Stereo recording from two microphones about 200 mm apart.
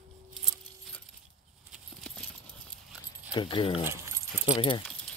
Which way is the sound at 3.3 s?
25° left (ahead or behind).